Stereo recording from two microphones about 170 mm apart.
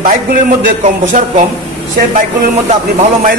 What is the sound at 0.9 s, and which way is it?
Speech, 50° right (ahead or behind).